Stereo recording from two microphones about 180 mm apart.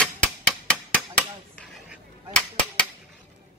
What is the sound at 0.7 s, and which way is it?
Hammer, 5° left (ahead or behind).